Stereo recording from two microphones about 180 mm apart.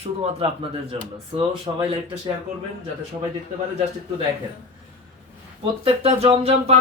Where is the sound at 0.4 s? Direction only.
30° right (ahead or behind).